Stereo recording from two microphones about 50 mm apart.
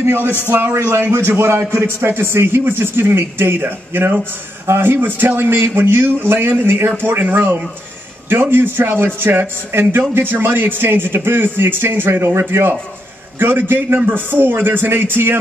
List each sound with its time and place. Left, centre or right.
0.5 s a man's voice: right
0.9 s a man's voice: right